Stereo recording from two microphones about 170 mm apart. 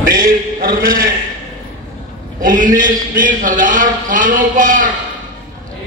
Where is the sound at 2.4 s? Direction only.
50° right (ahead or behind).